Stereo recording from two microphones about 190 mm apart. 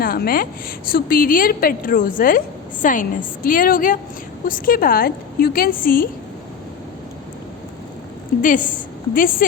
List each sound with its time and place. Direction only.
0.0 s a woman's voice: 50° left (ahead or behind)
8.4 s a woman's voice: 45° left (ahead or behind)